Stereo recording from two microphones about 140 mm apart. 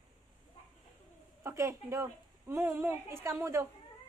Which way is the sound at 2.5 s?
20° right (ahead or behind).